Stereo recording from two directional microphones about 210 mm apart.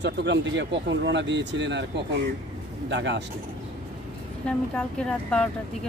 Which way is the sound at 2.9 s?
55° right (ahead or behind).